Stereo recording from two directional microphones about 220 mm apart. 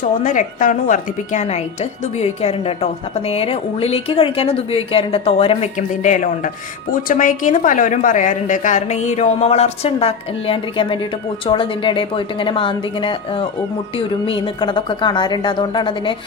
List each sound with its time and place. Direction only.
0.2 s a woman's voice: 35° left (ahead or behind)